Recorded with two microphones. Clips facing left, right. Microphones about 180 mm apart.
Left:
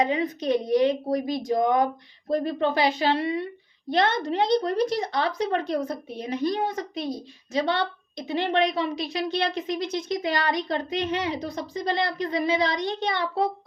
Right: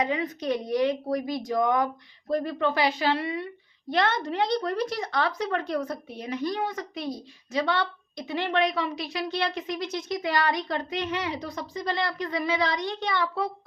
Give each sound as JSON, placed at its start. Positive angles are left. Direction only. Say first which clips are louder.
{"t": 0.0, "sound": "speech", "louder": "left 3 dB", "side_deg": 25}